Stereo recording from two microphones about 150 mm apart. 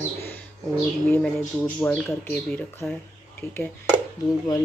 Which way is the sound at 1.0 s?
10° left (ahead or behind).